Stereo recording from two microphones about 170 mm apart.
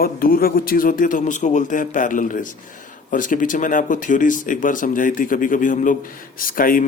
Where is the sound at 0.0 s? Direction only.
60° left (ahead or behind).